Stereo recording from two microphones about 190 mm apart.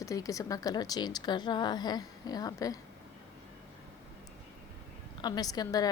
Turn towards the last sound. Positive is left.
turn(degrees=20)  # may be behind; listen again after turning